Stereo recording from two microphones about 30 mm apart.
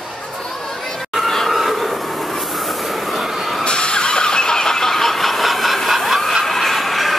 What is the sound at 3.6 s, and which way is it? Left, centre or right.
Vehicle, left.